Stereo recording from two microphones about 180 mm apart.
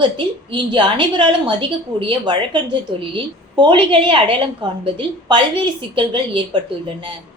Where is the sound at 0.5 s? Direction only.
25° right (ahead or behind).